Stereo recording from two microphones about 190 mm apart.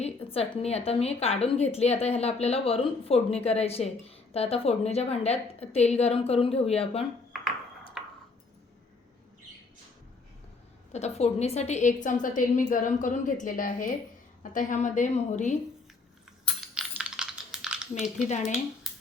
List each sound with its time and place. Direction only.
0.0 s a woman's voice: 30° left (ahead or behind)
8.0 s a sound: centre (ahead or behind)
10.9 s a woman's voice: 35° left (ahead or behind)
16.7 s computer keyboard: 5° right (ahead or behind)
18.3 s a woman's voice: 40° left (ahead or behind)